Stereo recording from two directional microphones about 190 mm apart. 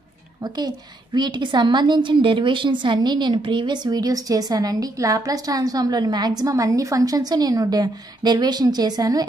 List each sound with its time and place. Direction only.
0.4 s a woman's voice: 20° right (ahead or behind)